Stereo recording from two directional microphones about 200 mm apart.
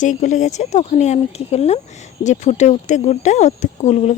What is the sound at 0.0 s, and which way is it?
Speech, 40° left (ahead or behind).